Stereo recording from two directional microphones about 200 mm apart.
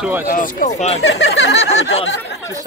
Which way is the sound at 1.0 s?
65° left (ahead or behind).